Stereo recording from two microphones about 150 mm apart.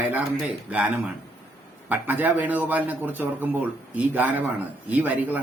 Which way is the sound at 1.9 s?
10° right (ahead or behind).